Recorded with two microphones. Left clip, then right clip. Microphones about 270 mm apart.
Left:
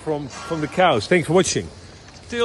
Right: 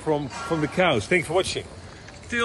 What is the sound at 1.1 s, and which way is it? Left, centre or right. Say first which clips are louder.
Speech: left 5 dB; left.